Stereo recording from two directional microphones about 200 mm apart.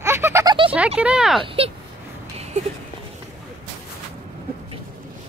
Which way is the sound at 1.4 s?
25° right (ahead or behind).